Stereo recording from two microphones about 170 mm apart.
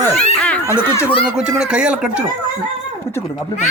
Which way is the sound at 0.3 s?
5° left (ahead or behind).